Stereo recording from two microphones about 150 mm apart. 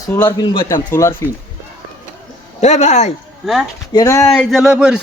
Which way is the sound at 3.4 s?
Centre (ahead or behind).